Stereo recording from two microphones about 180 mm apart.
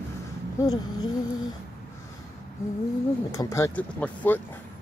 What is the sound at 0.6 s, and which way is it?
Speech, 20° left (ahead or behind).